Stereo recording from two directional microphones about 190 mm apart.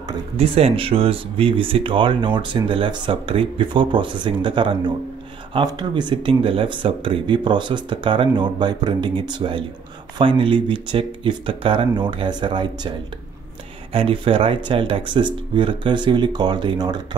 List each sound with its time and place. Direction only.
0.1 s speech: 30° right (ahead or behind)
13.9 s speech: 30° right (ahead or behind)